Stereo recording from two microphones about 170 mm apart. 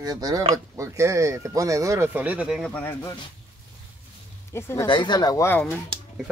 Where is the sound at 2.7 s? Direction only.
10° left (ahead or behind).